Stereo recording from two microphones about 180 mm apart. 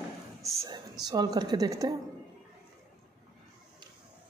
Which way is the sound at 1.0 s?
20° right (ahead or behind).